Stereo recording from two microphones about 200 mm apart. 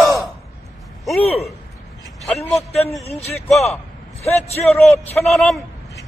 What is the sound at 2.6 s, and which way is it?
Speech, 30° left (ahead or behind).